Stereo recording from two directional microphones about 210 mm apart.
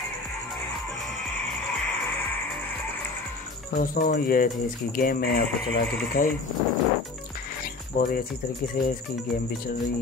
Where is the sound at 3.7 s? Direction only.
40° left (ahead or behind).